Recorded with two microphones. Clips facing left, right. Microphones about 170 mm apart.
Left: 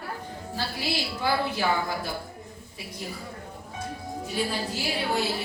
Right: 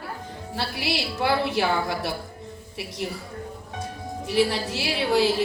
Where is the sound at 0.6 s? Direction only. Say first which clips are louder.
Right 3 dB; 80° right.